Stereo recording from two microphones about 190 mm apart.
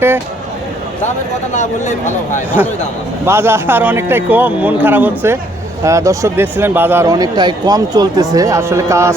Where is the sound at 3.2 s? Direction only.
15° right (ahead or behind).